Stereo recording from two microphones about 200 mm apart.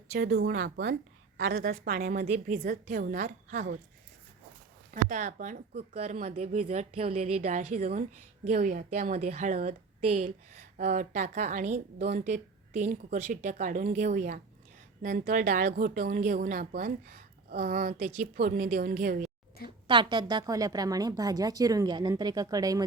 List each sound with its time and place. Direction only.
0.1 s speech: 55° right (ahead or behind); by 3.8 s 40° right (ahead or behind)
4.9 s speech: 40° right (ahead or behind)
19.9 s a woman's voice: 25° right (ahead or behind)